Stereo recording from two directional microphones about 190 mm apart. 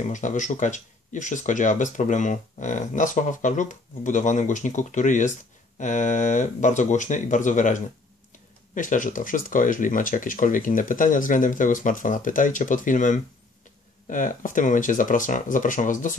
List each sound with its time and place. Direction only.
0.1 s speech: 40° left (ahead or behind)